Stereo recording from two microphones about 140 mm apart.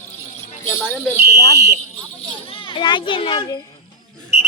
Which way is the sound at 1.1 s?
15° right (ahead or behind).